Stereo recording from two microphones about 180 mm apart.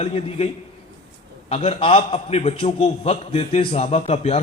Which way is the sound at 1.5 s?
35° left (ahead or behind).